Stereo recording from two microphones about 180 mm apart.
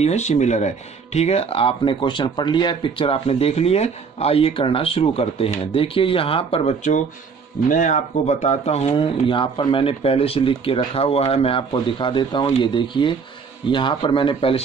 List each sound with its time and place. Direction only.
0.0 s speech: 40° left (ahead or behind)